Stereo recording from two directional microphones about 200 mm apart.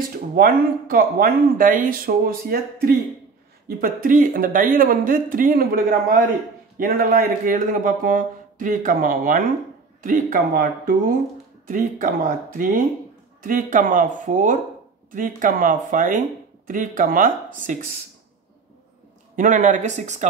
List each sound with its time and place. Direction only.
0.4 s speech: 45° right (ahead or behind)
19.3 s speech: 40° right (ahead or behind)